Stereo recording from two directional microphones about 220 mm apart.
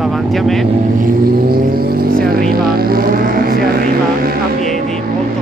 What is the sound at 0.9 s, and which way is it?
Vehicle, 40° right (ahead or behind).